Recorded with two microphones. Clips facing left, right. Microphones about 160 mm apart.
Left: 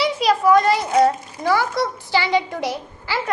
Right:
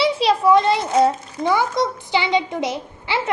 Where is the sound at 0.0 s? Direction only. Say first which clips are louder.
Right 1 dB; 25° right (ahead or behind).